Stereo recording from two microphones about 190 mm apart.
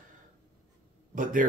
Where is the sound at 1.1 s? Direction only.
45° right (ahead or behind).